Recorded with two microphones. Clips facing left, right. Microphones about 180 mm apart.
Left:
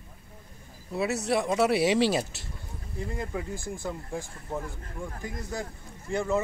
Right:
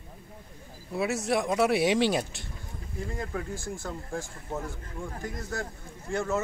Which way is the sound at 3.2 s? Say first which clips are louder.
Even; 15° left (ahead or behind).